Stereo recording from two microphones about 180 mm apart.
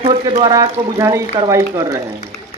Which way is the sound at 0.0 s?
30° right (ahead or behind).